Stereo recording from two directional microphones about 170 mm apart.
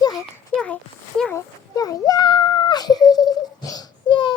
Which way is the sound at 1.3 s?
20° left (ahead or behind).